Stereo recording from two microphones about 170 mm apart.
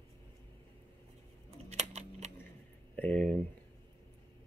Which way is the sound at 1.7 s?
40° right (ahead or behind).